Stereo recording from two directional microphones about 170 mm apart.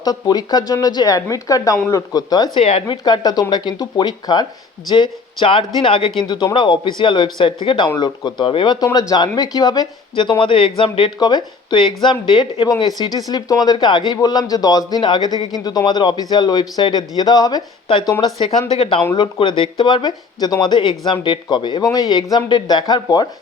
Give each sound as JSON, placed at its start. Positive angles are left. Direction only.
{"t": 0.0, "sound": "speech", "side_deg": 25}